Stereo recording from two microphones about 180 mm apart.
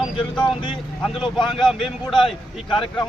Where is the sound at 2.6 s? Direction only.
25° left (ahead or behind).